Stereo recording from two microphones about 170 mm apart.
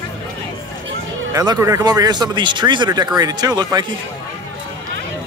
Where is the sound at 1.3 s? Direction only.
20° right (ahead or behind).